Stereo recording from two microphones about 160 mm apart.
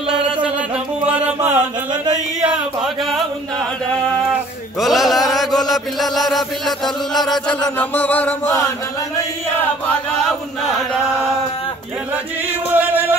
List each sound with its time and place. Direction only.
1.0 s music: 10° right (ahead or behind)
4.7 s a sound: centre (ahead or behind)
5.7 s chant: centre (ahead or behind)
7.8 s music: 10° left (ahead or behind)
12.7 s music: 10° right (ahead or behind)